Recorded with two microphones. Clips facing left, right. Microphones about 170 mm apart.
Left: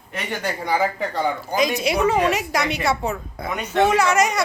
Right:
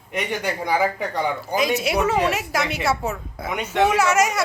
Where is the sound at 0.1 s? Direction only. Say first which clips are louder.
Right 2 dB; 15° right (ahead or behind).